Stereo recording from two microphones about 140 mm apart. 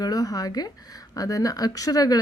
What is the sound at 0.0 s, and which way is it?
A woman's voice, 25° left (ahead or behind).